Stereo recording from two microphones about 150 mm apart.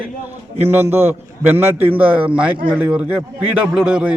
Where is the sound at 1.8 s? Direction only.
10° right (ahead or behind).